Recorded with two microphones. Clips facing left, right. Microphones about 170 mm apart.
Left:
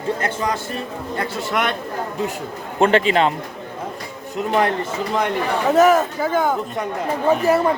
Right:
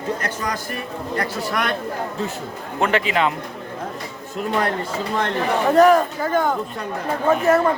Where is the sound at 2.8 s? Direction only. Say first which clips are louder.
Left 4 dB; 30° left (ahead or behind).